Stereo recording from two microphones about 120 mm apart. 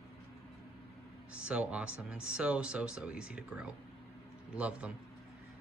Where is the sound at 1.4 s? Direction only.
10° right (ahead or behind).